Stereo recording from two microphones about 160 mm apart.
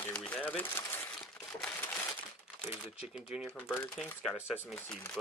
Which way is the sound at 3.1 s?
5° right (ahead or behind).